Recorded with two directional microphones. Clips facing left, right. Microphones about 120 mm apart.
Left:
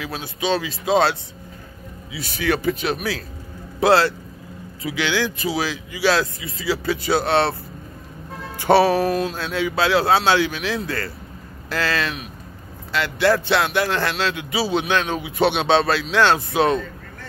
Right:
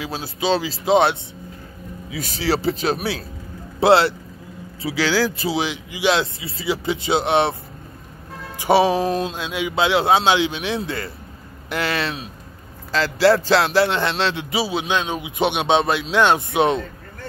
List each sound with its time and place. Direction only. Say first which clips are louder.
0.0 s speech: right 2 dB; 30° right (ahead or behind)
2.1 s speech: right 1 dB; 40° right (ahead or behind); by 7.5 s 15° right (ahead or behind)
8.5 s speech: left 1 dB; 15° right (ahead or behind)
14.6 s speech: left 2 dB; 10° right (ahead or behind)